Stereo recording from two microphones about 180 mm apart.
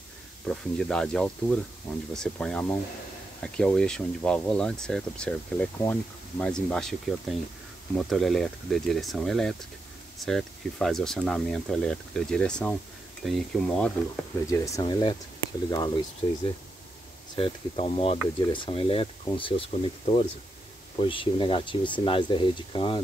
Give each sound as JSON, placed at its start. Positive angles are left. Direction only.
{"t": 0.5, "sound": "speech", "side_deg": 5}
{"t": 14.5, "sound": "speech", "side_deg": 20}